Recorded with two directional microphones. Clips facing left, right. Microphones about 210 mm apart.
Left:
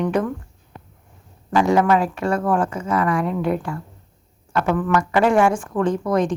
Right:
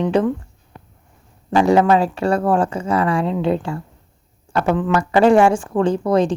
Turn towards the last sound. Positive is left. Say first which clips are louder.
# right 3 dB
turn(degrees=-30)  # may be behind; listen again after turning